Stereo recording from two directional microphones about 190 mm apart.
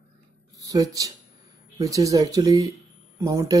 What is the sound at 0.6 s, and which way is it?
Speech, 20° right (ahead or behind).